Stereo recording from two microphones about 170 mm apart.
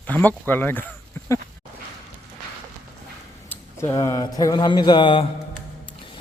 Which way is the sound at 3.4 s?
15° left (ahead or behind).